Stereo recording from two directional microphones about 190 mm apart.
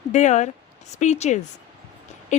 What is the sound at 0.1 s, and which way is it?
A woman's voice, 40° left (ahead or behind).